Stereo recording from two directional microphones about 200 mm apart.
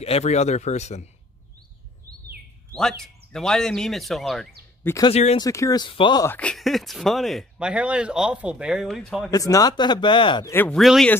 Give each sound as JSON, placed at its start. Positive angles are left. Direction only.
{"t": 0.0, "sound": "speech", "side_deg": 30}
{"t": 2.7, "sound": "speech", "side_deg": 0}
{"t": 4.8, "sound": "speech", "side_deg": 15}
{"t": 5.1, "sound": "speech", "side_deg": 30}
{"t": 5.4, "sound": "a man's voice", "side_deg": 15}
{"t": 6.3, "sound": "speech", "side_deg": 5}
{"t": 9.3, "sound": "a man's voice", "side_deg": 15}
{"t": 10.5, "sound": "speech", "side_deg": 5}